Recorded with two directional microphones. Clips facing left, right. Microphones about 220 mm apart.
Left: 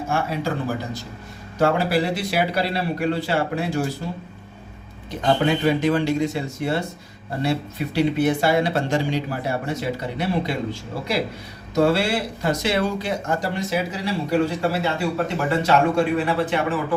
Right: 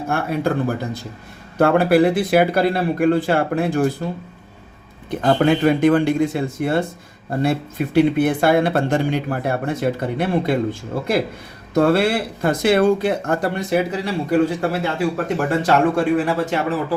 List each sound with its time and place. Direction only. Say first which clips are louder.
0.1 s speech: right 4 dB; 55° right (ahead or behind)
1.5 s speech: right 6 dB; 55° right (ahead or behind)
5.2 s speech: right 4 dB; 55° right (ahead or behind)